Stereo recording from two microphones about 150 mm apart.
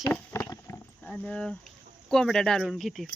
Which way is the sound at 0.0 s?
20° left (ahead or behind).